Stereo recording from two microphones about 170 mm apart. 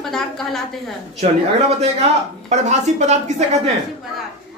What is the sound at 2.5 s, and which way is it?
Speech, 40° right (ahead or behind).